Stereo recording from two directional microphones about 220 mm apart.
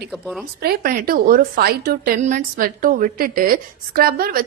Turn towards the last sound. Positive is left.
turn(degrees=-40)  # may be behind; listen again after turning